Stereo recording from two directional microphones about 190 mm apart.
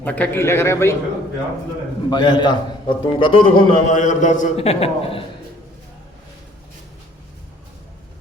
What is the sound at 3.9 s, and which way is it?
A man's voice, 40° left (ahead or behind).